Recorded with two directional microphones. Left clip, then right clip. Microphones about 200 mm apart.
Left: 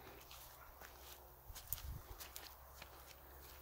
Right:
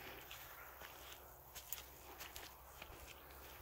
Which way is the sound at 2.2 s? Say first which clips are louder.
Right 2 dB; 15° right (ahead or behind).